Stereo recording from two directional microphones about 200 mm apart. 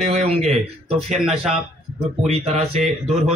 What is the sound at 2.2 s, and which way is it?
Speech, 30° right (ahead or behind).